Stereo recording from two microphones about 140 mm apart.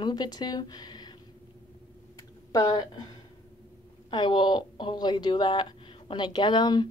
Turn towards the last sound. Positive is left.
turn(degrees=30)  # may be behind; listen again after turning